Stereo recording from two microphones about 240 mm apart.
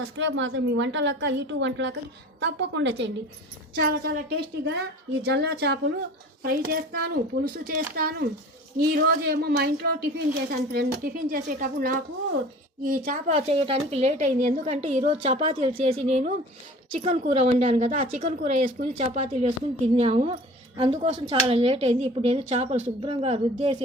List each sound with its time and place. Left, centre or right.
0.2 s a woman's voice: right
13.1 s a woman's voice: right